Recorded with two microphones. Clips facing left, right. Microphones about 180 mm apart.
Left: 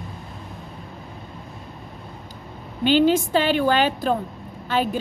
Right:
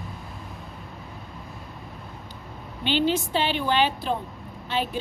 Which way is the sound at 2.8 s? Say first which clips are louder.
Left 7 dB; 45° left (ahead or behind).